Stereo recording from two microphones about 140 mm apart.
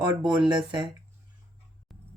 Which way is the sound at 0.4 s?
35° right (ahead or behind).